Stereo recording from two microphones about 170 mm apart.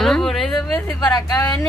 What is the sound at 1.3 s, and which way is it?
Speech, 20° left (ahead or behind).